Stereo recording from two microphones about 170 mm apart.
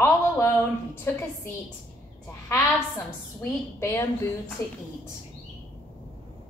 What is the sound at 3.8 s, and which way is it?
Speech, 15° left (ahead or behind).